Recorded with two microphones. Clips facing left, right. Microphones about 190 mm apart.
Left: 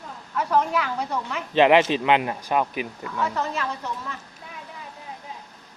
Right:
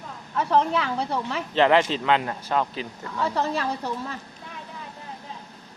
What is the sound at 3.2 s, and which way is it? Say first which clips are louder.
Speech: right 3 dB; 35° right (ahead or behind).